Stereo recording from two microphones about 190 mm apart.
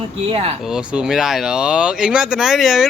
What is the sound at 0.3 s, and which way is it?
Speech, 30° right (ahead or behind).